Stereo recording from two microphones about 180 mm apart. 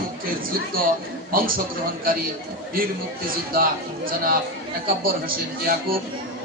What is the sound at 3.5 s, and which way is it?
A man's voice, 50° right (ahead or behind).